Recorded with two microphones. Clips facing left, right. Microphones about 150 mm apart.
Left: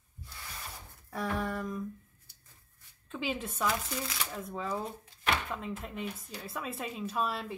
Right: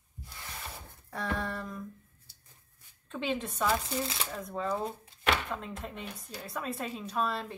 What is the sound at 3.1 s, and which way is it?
A woman's voice, 5° left (ahead or behind).